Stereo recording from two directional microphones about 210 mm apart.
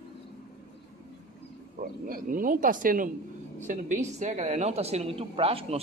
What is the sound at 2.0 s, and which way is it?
Speech, 40° right (ahead or behind).